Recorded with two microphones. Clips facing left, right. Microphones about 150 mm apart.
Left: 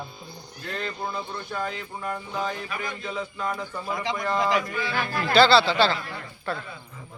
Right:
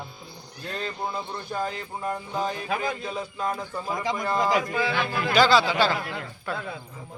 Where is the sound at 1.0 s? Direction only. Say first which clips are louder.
Even; 15° right (ahead or behind).